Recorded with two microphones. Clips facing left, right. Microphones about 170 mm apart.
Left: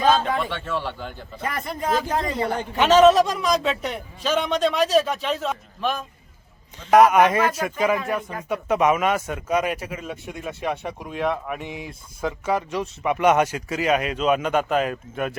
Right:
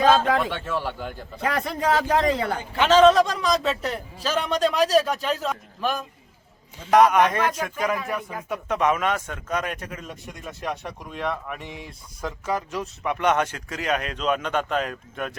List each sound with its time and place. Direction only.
0.3 s speech: 5° right (ahead or behind)
1.4 s a man's voice: 80° right
2.7 s speech: 10° left (ahead or behind)